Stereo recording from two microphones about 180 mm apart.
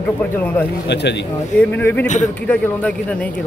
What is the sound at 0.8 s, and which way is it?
Speech, 70° left (ahead or behind).